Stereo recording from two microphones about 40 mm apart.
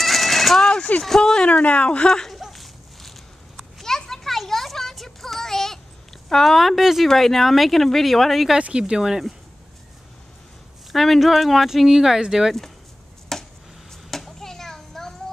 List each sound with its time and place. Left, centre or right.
0.0 s a sound: centre
0.6 s a sound: centre
1.0 s speech: centre
1.5 s speech: left
2.0 s speech: centre
2.3 s a sound: centre
6.2 s speech: centre
7.1 s speech: centre
8.5 s speech: right
9.0 s speech: centre
10.9 s speech: centre
13.3 s a sound: centre
14.1 s children playing: centre